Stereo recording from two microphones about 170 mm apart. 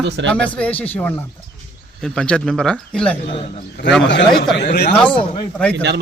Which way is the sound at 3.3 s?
35° left (ahead or behind).